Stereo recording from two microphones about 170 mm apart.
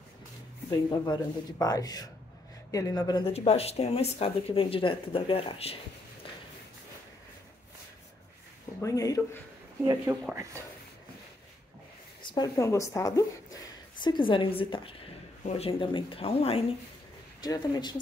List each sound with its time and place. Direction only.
0.7 s speech: 25° left (ahead or behind)
3.3 s speech: 35° left (ahead or behind)
8.8 s speech: 20° left (ahead or behind)
10.1 s speech: 15° right (ahead or behind)
12.2 s speech: 25° left (ahead or behind)
17.4 s speech: 25° left (ahead or behind)